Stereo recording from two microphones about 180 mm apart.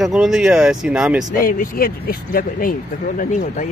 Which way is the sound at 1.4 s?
50° left (ahead or behind).